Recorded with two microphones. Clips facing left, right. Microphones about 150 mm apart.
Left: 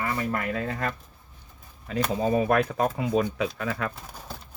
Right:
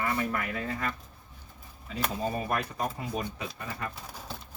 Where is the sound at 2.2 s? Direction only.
90° left.